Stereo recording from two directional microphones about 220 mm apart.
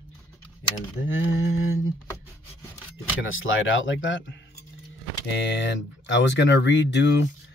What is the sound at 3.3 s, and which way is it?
Speech, 60° left (ahead or behind).